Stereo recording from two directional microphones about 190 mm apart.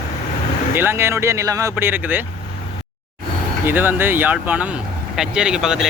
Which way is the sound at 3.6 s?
10° right (ahead or behind).